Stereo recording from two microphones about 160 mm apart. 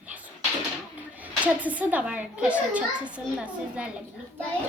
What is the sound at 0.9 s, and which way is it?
A woman's voice, 10° right (ahead or behind).